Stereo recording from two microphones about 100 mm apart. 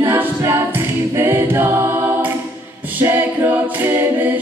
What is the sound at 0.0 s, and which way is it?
A capella, 20° right (ahead or behind).